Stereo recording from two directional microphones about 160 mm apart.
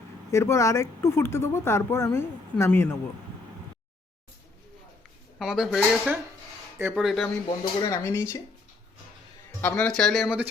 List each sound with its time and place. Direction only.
0.3 s speech: 15° left (ahead or behind)
5.4 s speech: centre (ahead or behind)
6.7 s speech: 15° right (ahead or behind)
7.0 s speech: centre (ahead or behind)
7.6 s speech: 30° left (ahead or behind)
7.9 s speech: 15° left (ahead or behind)
9.6 s speech: 10° left (ahead or behind)